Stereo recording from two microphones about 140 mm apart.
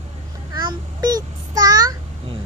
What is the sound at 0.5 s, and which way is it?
Child singing, 30° right (ahead or behind).